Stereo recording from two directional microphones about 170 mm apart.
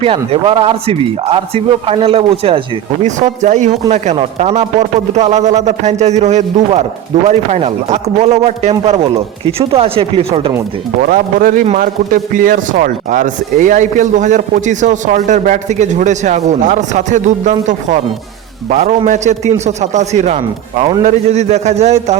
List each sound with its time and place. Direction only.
0.0 s speech: 35° right (ahead or behind)
11.0 s speech: 55° right (ahead or behind); by 22.2 s 40° right (ahead or behind)